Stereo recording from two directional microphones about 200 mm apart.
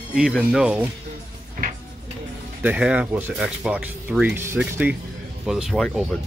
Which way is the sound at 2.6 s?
5° right (ahead or behind).